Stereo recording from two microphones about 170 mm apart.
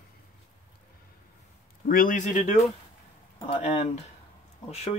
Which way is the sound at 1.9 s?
50° left (ahead or behind).